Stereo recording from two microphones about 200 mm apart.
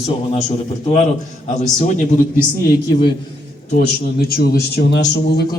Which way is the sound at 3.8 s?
50° left (ahead or behind).